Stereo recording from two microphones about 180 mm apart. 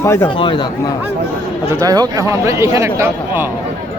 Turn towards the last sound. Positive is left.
turn(degrees=-15)  # may be behind; listen again after turning